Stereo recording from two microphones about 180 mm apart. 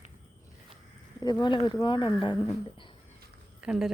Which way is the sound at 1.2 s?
25° left (ahead or behind).